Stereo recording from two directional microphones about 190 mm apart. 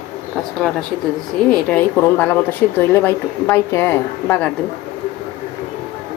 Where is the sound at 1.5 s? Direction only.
5° left (ahead or behind).